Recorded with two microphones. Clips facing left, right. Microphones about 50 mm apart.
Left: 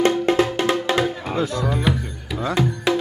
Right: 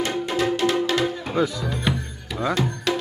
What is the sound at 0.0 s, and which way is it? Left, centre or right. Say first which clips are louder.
Music: left 6 dB; left.